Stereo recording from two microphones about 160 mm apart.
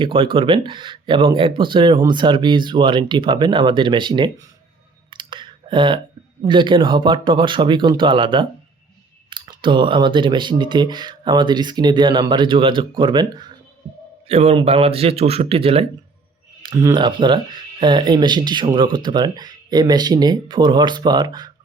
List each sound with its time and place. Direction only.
0.0 s speech: 35° right (ahead or behind)
5.1 s clicking: 30° right (ahead or behind)
6.4 s speech: 30° right (ahead or behind)
14.3 s speech: 40° right (ahead or behind)
16.6 s speech: 25° right (ahead or behind)